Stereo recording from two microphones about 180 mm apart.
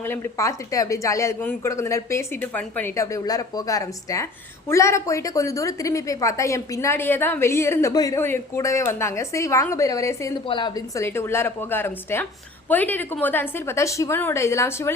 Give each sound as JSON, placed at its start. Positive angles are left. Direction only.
{"t": 0.0, "sound": "a woman's voice", "side_deg": 15}